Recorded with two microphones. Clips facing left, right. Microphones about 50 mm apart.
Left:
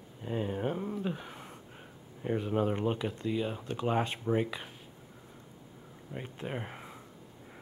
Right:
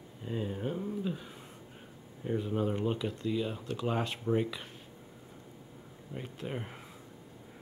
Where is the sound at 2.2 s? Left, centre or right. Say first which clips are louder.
Left 2 dB; left.